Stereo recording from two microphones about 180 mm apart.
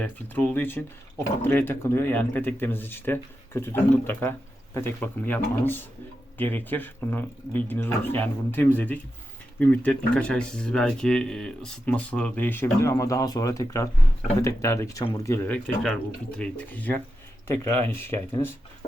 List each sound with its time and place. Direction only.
0.0 s speech: 10° left (ahead or behind)